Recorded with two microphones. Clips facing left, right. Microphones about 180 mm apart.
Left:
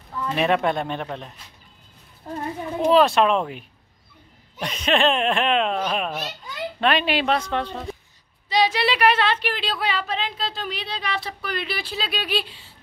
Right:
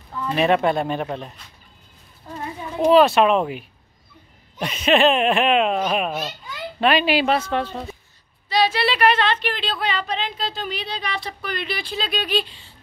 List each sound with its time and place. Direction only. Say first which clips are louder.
0.3 s speech: right 3 dB; centre (ahead or behind)
2.3 s children playing: left 4 dB; 50° left (ahead or behind)
2.9 s a child's voice: right 3 dB; 5° right (ahead or behind)
8.5 s speech: right 1 dB; 20° left (ahead or behind)